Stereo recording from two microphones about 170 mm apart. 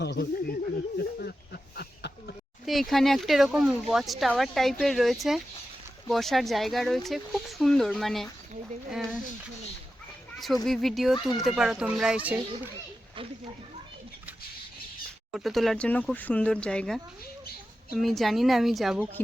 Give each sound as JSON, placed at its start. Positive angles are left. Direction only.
{"t": 0.0, "sound": "speech", "side_deg": 70}
{"t": 1.7, "sound": "a sound", "side_deg": 70}
{"t": 2.6, "sound": "speech", "side_deg": 0}
{"t": 8.9, "sound": "a sound", "side_deg": 0}
{"t": 10.4, "sound": "speech", "side_deg": 0}
{"t": 15.3, "sound": "speech", "side_deg": 0}